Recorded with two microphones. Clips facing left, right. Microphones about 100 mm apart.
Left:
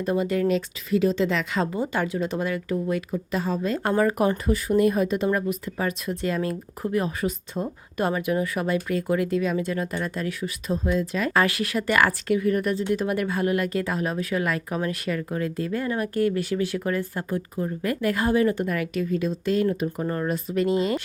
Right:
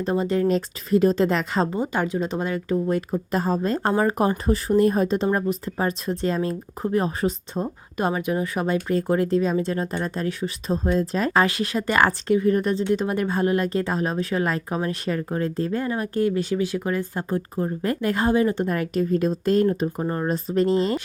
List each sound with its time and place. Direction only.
0.0 s speech: 30° right (ahead or behind)
11.3 s speech: 25° right (ahead or behind); by 19.6 s 40° right (ahead or behind)
19.6 s speech: 30° right (ahead or behind)